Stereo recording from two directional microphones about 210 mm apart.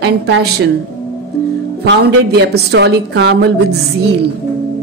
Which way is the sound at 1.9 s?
55° right (ahead or behind).